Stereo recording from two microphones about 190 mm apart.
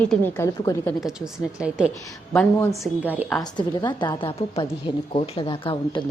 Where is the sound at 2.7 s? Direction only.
5° right (ahead or behind).